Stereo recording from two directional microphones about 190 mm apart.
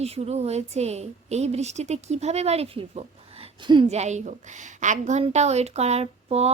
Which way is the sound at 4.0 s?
40° right (ahead or behind).